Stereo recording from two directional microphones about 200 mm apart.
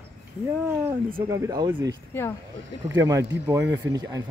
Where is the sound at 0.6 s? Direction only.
10° right (ahead or behind).